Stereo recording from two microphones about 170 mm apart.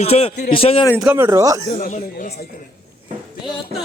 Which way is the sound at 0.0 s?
35° left (ahead or behind).